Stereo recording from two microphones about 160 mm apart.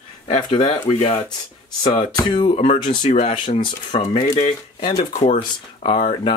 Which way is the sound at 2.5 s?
45° left (ahead or behind).